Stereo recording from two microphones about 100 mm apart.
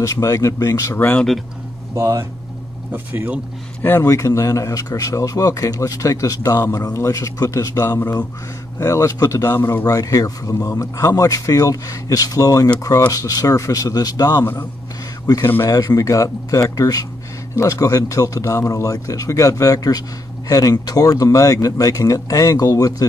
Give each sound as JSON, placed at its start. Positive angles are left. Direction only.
{"t": 0.0, "sound": "a man's voice", "side_deg": 30}
{"t": 2.0, "sound": "speech", "side_deg": -30}
{"t": 2.9, "sound": "speech", "side_deg": -15}
{"t": 3.8, "sound": "a man's voice", "side_deg": 20}
{"t": 14.4, "sound": "speech", "side_deg": 20}
{"t": 15.7, "sound": "a man's voice", "side_deg": 35}